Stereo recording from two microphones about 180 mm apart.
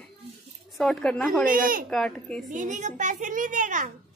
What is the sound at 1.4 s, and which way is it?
Speech, 50° right (ahead or behind).